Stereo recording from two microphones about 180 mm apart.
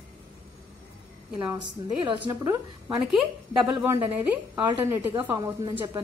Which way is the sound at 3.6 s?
5° right (ahead or behind).